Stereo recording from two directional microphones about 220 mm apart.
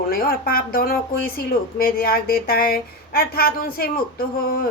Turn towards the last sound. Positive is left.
turn(degrees=40)  # may be behind; listen again after turning